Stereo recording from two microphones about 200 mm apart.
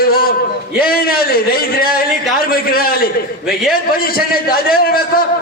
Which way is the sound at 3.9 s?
45° left (ahead or behind).